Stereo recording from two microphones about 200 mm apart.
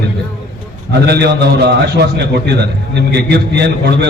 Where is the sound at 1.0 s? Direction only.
55° right (ahead or behind).